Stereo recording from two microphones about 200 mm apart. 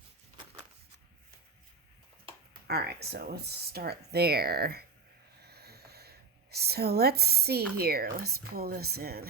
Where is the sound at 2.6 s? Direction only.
55° right (ahead or behind).